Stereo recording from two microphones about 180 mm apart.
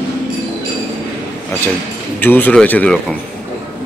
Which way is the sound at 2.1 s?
10° left (ahead or behind).